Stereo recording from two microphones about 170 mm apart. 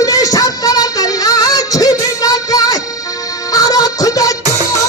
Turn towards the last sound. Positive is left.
turn(degrees=20)  # may be behind; listen again after turning